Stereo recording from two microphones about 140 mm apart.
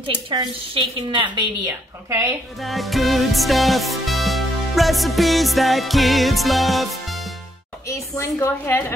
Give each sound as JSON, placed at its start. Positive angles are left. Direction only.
{"t": 0.3, "sound": "a woman's voice", "side_deg": -35}
{"t": 1.7, "sound": "a woman's voice", "side_deg": -20}
{"t": 2.6, "sound": "music", "side_deg": 0}
{"t": 7.9, "sound": "a woman's voice", "side_deg": 20}